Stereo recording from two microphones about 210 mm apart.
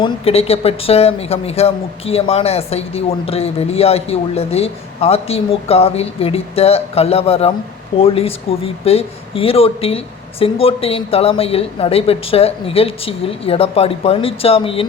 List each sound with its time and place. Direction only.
0.0 s speech: 30° left (ahead or behind)